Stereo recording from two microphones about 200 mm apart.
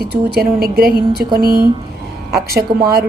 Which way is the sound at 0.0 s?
50° right (ahead or behind).